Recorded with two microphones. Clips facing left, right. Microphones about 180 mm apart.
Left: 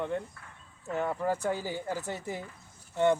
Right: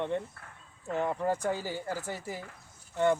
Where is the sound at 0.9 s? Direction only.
15° right (ahead or behind).